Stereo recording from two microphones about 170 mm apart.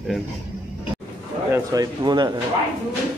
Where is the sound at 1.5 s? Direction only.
20° right (ahead or behind).